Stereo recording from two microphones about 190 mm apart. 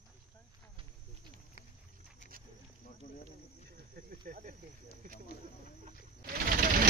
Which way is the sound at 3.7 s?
50° right (ahead or behind).